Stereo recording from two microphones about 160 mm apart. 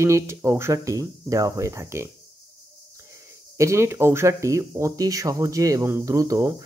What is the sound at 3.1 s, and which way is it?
Speech, 20° right (ahead or behind).